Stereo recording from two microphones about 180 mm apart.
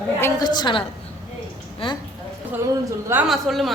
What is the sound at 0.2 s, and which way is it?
Speech, 20° left (ahead or behind).